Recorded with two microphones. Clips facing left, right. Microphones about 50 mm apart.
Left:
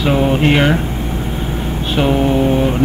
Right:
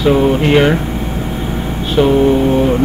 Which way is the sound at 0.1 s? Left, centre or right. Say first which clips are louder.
Right 2 dB; centre.